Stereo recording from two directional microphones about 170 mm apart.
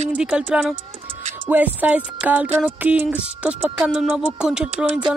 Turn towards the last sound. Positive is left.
turn(degrees=-5)  # may be behind; listen again after turning